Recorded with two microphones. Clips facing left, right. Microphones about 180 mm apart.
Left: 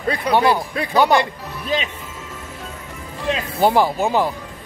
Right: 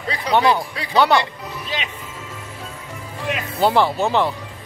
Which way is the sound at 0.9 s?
10° left (ahead or behind).